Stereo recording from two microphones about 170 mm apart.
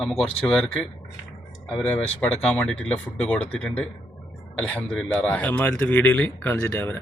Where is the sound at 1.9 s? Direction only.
10° left (ahead or behind).